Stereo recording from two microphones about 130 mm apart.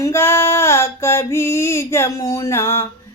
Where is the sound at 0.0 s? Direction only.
20° left (ahead or behind).